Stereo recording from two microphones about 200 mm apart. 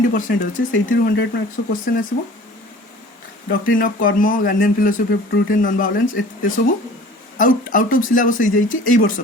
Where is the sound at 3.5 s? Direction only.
45° left (ahead or behind).